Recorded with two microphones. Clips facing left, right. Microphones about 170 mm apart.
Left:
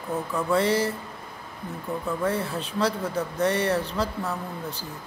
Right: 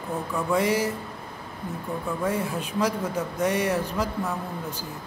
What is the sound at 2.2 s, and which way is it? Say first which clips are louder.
Speech: right 1 dB; 15° right (ahead or behind).